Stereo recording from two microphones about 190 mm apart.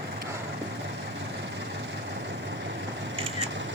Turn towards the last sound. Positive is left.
turn(degrees=-30)  # may be behind; listen again after turning